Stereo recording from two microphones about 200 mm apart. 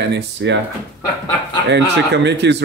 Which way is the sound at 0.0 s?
60° right (ahead or behind).